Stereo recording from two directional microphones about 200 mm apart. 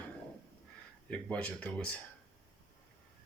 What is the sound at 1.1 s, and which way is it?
Speech, 5° left (ahead or behind).